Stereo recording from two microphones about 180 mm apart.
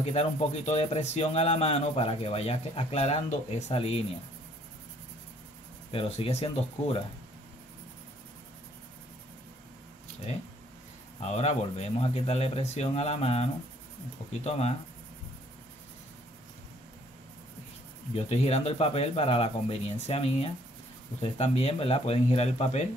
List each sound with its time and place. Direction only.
0.0 s speech: 35° left (ahead or behind)
5.9 s speech: 35° left (ahead or behind)
11.1 s speech: 35° left (ahead or behind)
18.1 s speech: 35° left (ahead or behind)